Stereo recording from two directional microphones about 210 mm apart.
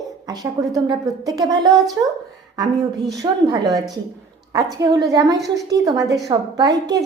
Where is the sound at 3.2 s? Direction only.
20° right (ahead or behind).